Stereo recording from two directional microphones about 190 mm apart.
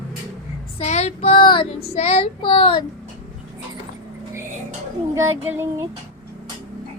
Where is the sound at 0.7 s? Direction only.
35° left (ahead or behind).